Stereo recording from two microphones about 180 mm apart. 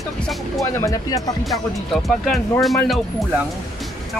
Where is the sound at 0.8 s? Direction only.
20° left (ahead or behind).